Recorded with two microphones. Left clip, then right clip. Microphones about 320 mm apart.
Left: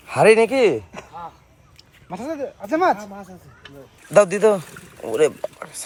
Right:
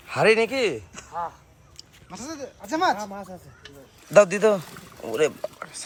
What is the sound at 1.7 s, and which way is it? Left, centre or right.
Speech, centre.